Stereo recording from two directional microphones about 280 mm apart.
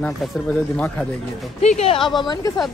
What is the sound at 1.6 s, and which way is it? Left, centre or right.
Speech, left.